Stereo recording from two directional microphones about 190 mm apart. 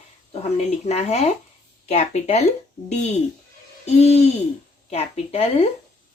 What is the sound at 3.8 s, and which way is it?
Speech, 35° left (ahead or behind).